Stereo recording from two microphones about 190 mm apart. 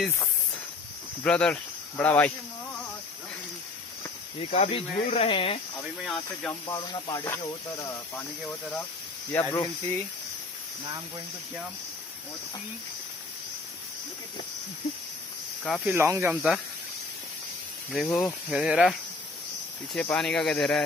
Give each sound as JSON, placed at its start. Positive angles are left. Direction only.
{"t": 1.2, "sound": "speech", "side_deg": 5}
{"t": 4.5, "sound": "speech", "side_deg": 35}
{"t": 5.9, "sound": "speech", "side_deg": 0}
{"t": 6.7, "sound": "speech", "side_deg": 20}
{"t": 9.3, "sound": "speech", "side_deg": 15}
{"t": 15.6, "sound": "speech", "side_deg": 0}
{"t": 15.9, "sound": "speech", "side_deg": -15}
{"t": 17.9, "sound": "speech", "side_deg": 0}